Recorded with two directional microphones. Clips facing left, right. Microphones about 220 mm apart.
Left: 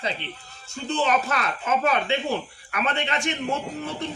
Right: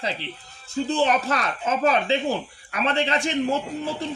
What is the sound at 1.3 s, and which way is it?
Speech, 30° right (ahead or behind).